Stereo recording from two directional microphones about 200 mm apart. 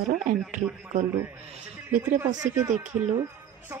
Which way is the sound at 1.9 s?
10° right (ahead or behind).